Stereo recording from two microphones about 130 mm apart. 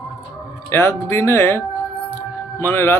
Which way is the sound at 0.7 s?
20° left (ahead or behind).